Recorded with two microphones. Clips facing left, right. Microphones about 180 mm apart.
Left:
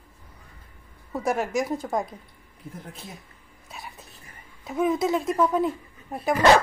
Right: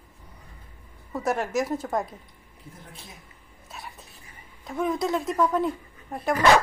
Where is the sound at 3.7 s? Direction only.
Centre (ahead or behind).